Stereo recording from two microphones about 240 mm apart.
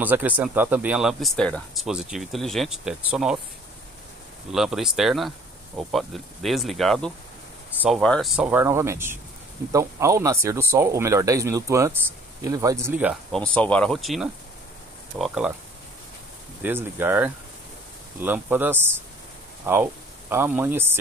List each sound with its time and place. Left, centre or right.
0.0 s speech: centre
4.5 s speech: centre
16.6 s speech: centre